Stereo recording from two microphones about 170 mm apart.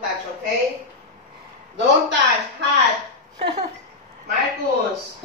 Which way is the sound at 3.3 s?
35° right (ahead or behind).